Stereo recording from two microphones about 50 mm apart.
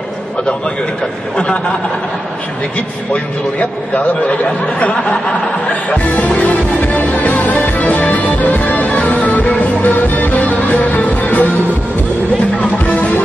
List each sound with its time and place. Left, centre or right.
1.3 s speech: left
3.1 s speech: left
5.1 s music: left
12.5 s speech: left